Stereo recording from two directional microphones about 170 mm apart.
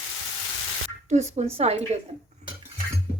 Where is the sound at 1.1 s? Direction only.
40° right (ahead or behind).